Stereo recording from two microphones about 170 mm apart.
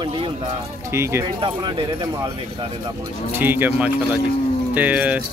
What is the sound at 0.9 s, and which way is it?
Speech, 15° right (ahead or behind).